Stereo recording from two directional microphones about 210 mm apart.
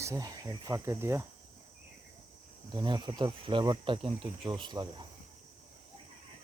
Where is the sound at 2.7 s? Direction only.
20° right (ahead or behind).